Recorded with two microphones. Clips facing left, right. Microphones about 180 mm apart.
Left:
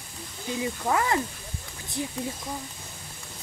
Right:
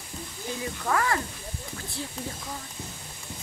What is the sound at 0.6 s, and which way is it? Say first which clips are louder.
Speech: left 2 dB; 20° left (ahead or behind).